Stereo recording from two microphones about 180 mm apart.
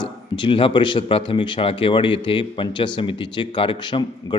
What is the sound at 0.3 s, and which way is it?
Speech, 25° left (ahead or behind).